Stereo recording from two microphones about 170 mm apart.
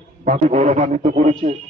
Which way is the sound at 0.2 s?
45° right (ahead or behind).